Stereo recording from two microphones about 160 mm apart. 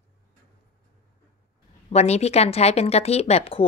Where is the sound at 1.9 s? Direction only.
40° left (ahead or behind).